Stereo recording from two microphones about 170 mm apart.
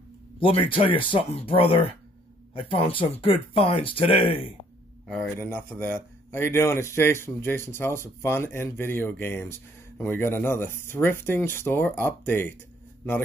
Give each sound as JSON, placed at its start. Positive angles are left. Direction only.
{"t": 0.4, "sound": "speech", "side_deg": 30}
{"t": 5.4, "sound": "speech", "side_deg": 10}